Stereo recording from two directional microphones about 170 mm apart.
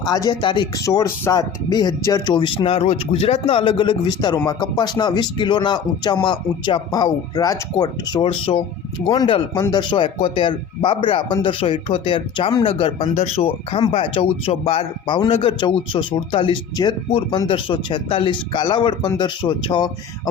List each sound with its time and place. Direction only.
0.0 s speech: 20° left (ahead or behind)